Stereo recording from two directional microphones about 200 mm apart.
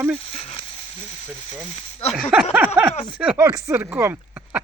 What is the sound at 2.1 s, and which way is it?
Speech, centre (ahead or behind).